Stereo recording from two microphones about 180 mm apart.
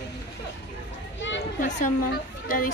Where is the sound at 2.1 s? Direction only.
50° left (ahead or behind).